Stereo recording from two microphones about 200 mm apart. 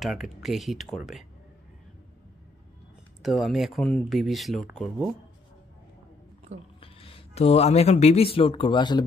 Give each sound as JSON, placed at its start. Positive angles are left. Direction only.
{"t": 0.0, "sound": "speech", "side_deg": 0}
{"t": 3.2, "sound": "speech", "side_deg": 0}
{"t": 6.8, "sound": "speech", "side_deg": 25}